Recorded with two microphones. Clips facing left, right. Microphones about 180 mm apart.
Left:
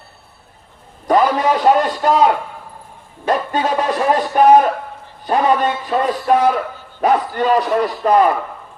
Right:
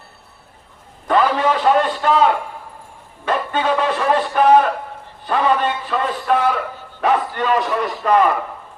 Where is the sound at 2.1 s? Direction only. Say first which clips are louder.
Left 2 dB; 40° left (ahead or behind).